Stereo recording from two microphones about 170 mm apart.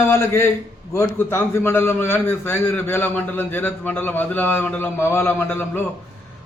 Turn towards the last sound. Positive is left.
turn(degrees=10)  # may be behind; listen again after turning